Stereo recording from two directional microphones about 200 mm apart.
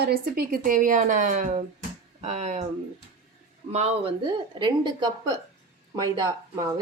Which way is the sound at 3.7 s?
30° right (ahead or behind).